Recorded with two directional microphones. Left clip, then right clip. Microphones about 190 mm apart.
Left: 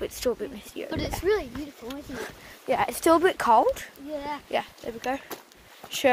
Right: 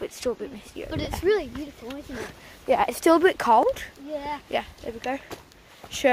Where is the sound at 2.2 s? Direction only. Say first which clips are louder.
Even; 15° right (ahead or behind).